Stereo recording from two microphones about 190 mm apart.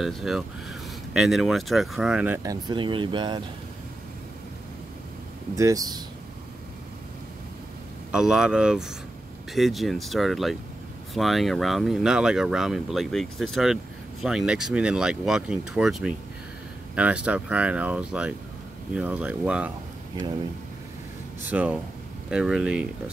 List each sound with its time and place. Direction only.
0.0 s speech: centre (ahead or behind); by 3.4 s 25° right (ahead or behind)
5.6 s speech: 20° right (ahead or behind)
8.1 s speech: 5° right (ahead or behind)
21.5 s speech: 10° right (ahead or behind)